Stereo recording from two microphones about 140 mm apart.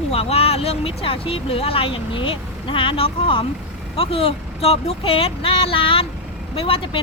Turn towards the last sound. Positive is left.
turn(degrees=40)  # may be behind; listen again after turning